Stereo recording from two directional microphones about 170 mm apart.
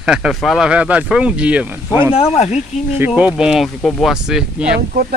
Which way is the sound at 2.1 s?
40° left (ahead or behind).